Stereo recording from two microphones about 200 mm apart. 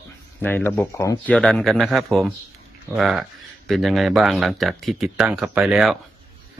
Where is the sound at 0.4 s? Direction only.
10° left (ahead or behind).